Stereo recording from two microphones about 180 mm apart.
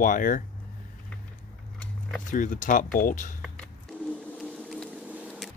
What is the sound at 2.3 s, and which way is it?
Speech, 45° left (ahead or behind).